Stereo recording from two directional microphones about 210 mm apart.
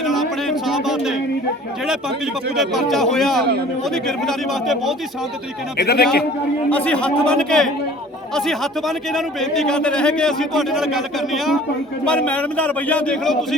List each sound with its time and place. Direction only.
0.0 s a sound: centre (ahead or behind)
2.6 s a man's voice: centre (ahead or behind)
5.7 s speech: 50° left (ahead or behind)
6.7 s a man's voice: 5° left (ahead or behind)